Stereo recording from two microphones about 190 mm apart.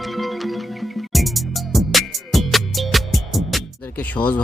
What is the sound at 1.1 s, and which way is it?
Music, centre (ahead or behind).